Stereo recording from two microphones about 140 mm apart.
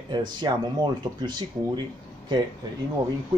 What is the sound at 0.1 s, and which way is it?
Speech, 30° right (ahead or behind).